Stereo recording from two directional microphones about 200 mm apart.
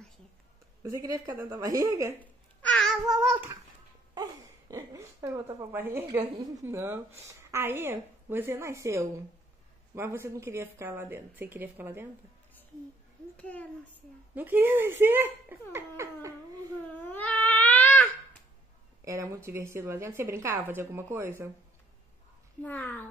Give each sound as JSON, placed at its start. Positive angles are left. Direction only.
{"t": 0.8, "sound": "a woman's voice", "side_deg": -15}
{"t": 2.6, "sound": "babbling", "side_deg": 5}
{"t": 4.1, "sound": "a sound", "side_deg": -15}
{"t": 6.1, "sound": "a woman's voice", "side_deg": -10}
{"t": 13.4, "sound": "speech", "side_deg": 5}
{"t": 14.3, "sound": "a woman's voice", "side_deg": -10}
{"t": 17.0, "sound": "baby cry", "side_deg": 10}
{"t": 19.0, "sound": "a woman's voice", "side_deg": -15}
{"t": 22.6, "sound": "speech", "side_deg": 10}